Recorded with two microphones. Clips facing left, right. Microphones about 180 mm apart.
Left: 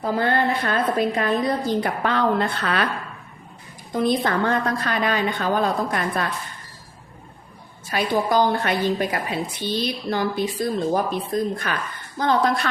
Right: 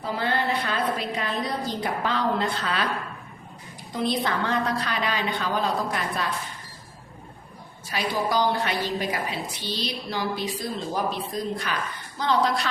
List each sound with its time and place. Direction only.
0.0 s a woman's voice: 50° left (ahead or behind)
3.9 s a woman's voice: 50° left (ahead or behind)
7.9 s a woman's voice: 50° left (ahead or behind)